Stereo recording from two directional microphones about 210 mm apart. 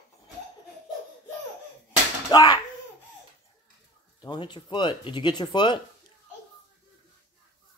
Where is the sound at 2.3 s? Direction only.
20° left (ahead or behind).